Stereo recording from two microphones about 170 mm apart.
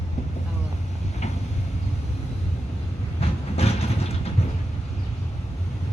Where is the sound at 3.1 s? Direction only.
40° left (ahead or behind).